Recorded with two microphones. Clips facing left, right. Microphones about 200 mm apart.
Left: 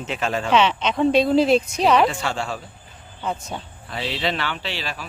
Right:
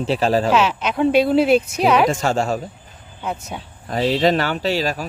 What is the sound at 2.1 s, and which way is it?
Speech, 45° right (ahead or behind).